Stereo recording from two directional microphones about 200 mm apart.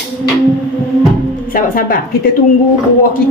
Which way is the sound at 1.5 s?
45° left (ahead or behind).